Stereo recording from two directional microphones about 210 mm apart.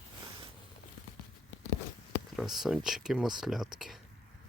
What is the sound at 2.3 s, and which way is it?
Speech, centre (ahead or behind).